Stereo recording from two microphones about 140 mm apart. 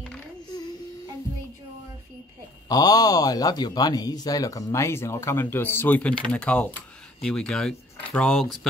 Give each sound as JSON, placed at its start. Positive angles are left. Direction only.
{"t": 2.7, "sound": "speech", "side_deg": 25}